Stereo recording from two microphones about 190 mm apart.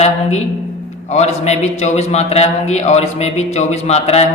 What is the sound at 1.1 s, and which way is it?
Speech, 35° left (ahead or behind).